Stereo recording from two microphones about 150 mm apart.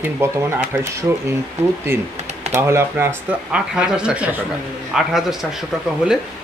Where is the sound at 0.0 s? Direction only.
15° right (ahead or behind).